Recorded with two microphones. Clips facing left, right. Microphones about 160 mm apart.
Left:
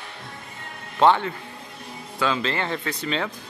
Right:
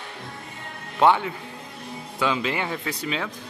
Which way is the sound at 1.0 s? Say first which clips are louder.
Left 1 dB; 10° right (ahead or behind).